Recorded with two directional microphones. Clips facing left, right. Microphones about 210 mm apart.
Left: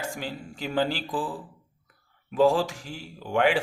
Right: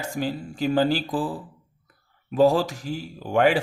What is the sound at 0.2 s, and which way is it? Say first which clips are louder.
Speech: right 8 dB; 40° right (ahead or behind).